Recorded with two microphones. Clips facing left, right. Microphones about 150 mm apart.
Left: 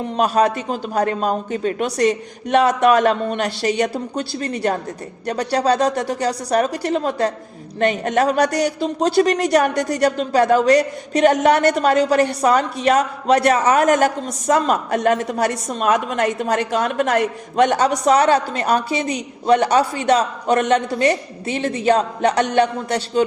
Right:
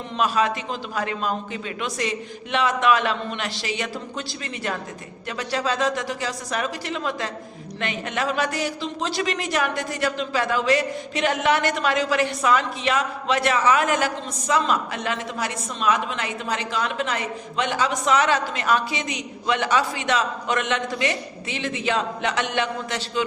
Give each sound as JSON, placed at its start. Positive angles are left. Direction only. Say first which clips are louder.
{"t": 0.2, "sound": "a woman's voice", "louder": "left 5 dB", "side_deg": 45}